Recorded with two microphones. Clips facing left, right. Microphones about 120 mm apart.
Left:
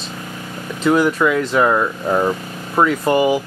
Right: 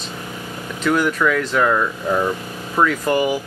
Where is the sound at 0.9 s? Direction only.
20° left (ahead or behind).